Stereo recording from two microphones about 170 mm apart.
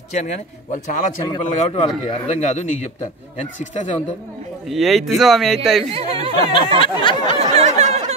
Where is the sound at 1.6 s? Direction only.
40° left (ahead or behind).